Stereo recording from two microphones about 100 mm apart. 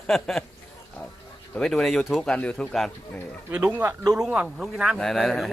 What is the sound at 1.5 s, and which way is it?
A man's voice, 5° left (ahead or behind).